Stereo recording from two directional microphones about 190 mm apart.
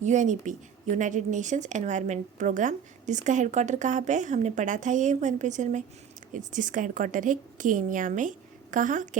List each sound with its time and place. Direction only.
0.0 s a woman's voice: 40° right (ahead or behind)